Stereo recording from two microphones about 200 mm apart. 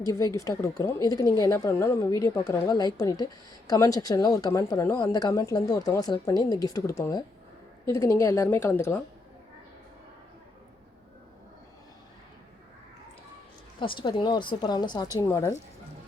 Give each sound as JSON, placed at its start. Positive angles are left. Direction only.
{"t": 0.0, "sound": "a woman's voice", "side_deg": 15}
{"t": 13.7, "sound": "a woman's voice", "side_deg": 25}